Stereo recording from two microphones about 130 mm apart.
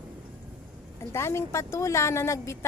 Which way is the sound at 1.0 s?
20° left (ahead or behind).